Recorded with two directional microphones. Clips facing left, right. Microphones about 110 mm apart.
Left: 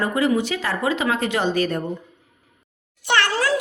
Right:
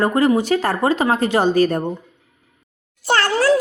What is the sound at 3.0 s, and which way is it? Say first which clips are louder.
Meow: right 2 dB; 40° right (ahead or behind).